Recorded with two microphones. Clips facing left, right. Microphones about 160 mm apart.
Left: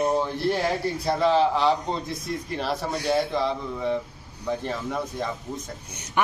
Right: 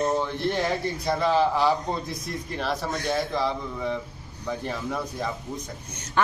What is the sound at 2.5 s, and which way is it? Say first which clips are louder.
Speech: even; 5° left (ahead or behind).